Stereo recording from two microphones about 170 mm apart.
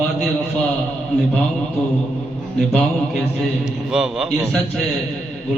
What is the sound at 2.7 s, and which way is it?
A man's voice, 5° left (ahead or behind).